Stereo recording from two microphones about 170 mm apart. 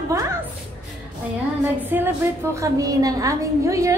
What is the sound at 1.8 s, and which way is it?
A woman's voice, 10° right (ahead or behind).